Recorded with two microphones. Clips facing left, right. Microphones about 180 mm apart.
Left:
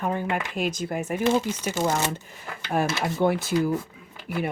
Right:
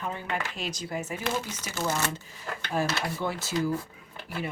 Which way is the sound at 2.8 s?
60° left (ahead or behind).